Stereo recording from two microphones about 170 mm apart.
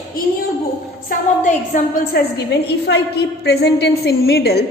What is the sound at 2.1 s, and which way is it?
A woman's voice, 70° left (ahead or behind).